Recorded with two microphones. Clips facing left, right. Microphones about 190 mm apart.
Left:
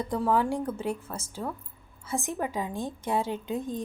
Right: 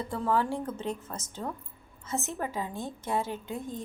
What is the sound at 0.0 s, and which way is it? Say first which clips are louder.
A woman's voice: left 3 dB; 15° left (ahead or behind).